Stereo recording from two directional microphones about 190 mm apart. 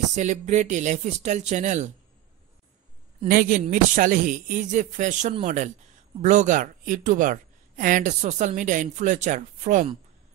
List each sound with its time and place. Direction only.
0.1 s speech: 40° right (ahead or behind)
3.3 s speech: 45° right (ahead or behind)